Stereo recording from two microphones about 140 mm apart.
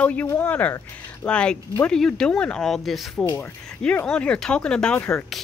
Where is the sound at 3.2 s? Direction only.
15° left (ahead or behind).